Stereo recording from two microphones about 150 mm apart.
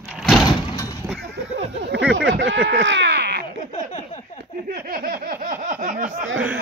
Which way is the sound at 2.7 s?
90° right.